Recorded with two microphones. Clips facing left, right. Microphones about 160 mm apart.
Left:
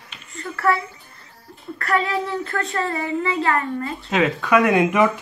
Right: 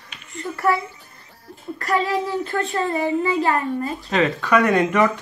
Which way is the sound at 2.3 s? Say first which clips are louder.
Right 2 dB; 30° right (ahead or behind).